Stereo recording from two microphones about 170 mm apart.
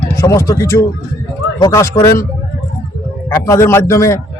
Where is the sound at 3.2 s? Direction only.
15° left (ahead or behind).